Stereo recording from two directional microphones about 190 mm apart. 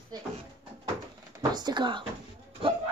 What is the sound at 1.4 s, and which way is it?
Speech, 20° right (ahead or behind).